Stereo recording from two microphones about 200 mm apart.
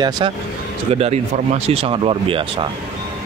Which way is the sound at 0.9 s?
30° right (ahead or behind).